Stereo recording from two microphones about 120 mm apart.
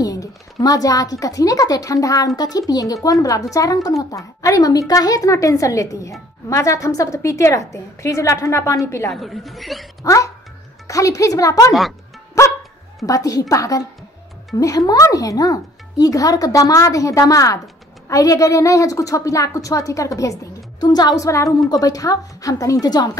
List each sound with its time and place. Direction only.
0.0 s a sound: 30° left (ahead or behind)
1.2 s speech: 30° left (ahead or behind)
9.1 s speech: centre (ahead or behind)
10.0 s speech: 25° left (ahead or behind)
13.0 s a woman's voice: 30° left (ahead or behind)